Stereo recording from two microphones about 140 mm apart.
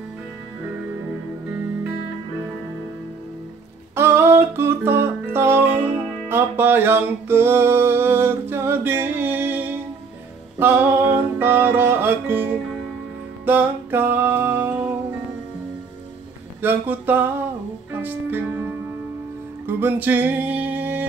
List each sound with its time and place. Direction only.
3.9 s music: 15° right (ahead or behind)
16.6 s a sound: 15° right (ahead or behind)
17.9 s music: 15° right (ahead or behind)
19.6 s music: 15° right (ahead or behind)